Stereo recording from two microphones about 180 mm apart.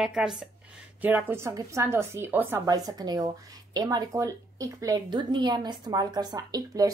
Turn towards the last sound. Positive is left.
turn(degrees=-20)  # may be behind; listen again after turning